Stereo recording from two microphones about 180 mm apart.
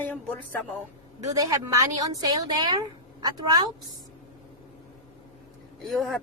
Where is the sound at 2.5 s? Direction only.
25° right (ahead or behind).